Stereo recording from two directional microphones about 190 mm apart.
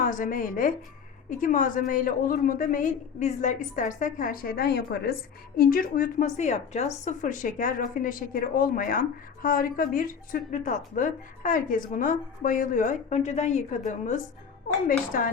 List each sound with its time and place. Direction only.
0.0 s a woman's voice: 45° left (ahead or behind)